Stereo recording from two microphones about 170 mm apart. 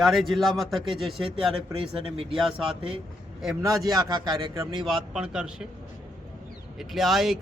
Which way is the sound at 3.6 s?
20° right (ahead or behind).